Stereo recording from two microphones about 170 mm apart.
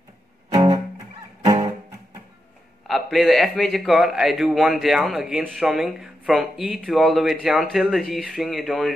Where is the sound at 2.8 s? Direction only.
Centre (ahead or behind).